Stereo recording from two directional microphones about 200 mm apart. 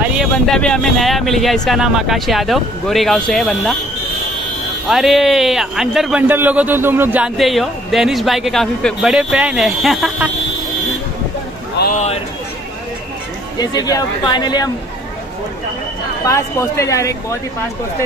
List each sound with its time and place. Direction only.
0.1 s a man's voice: centre (ahead or behind)
4.8 s a man's voice: centre (ahead or behind)
11.9 s speech: 30° left (ahead or behind)
13.6 s speech: 20° left (ahead or behind)
16.3 s speech: 15° left (ahead or behind)